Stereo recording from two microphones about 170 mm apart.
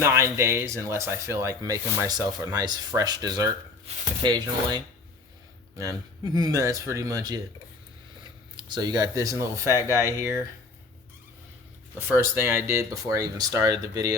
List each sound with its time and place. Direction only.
0.0 s speech: 15° right (ahead or behind)
8.2 s a sound: 25° right (ahead or behind)
9.4 s speech: 15° right (ahead or behind)
11.9 s speech: 15° right (ahead or behind)